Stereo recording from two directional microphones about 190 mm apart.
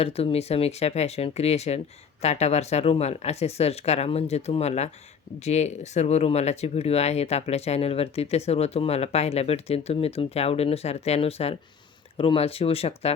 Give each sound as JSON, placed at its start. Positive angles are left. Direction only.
{"t": 0.0, "sound": "speech", "side_deg": 30}